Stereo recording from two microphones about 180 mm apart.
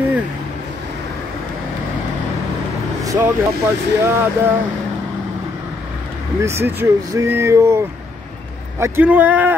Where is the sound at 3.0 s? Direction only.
20° right (ahead or behind).